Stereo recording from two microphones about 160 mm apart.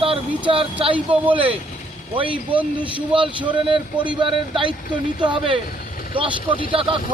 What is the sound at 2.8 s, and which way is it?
Speech, 30° right (ahead or behind).